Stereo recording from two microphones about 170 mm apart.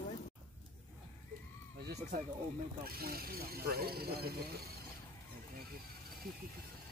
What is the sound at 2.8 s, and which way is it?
Speech, 65° right (ahead or behind).